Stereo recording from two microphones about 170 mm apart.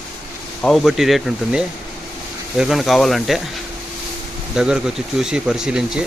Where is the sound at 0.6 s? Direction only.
Centre (ahead or behind).